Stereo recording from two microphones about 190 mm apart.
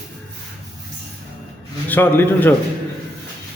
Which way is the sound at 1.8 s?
10° left (ahead or behind).